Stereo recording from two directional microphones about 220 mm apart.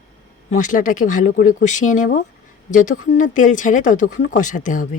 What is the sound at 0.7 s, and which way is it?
Speech, 35° left (ahead or behind).